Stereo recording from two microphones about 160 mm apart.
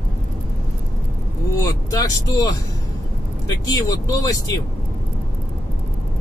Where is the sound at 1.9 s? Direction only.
25° left (ahead or behind).